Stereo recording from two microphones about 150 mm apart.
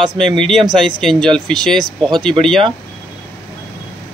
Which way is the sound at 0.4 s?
Centre (ahead or behind).